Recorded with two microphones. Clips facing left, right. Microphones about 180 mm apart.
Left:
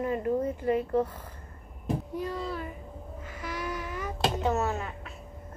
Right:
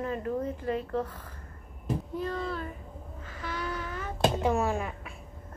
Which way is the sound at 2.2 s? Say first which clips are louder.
Even; 15° left (ahead or behind).